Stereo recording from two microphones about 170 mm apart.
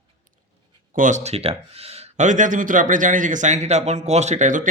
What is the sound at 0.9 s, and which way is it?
Speech, 45° right (ahead or behind).